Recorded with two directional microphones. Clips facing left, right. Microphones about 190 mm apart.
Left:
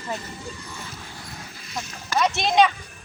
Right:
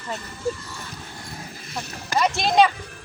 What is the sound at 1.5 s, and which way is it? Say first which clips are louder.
Clip-clop: right 4 dB; 50° right (ahead or behind).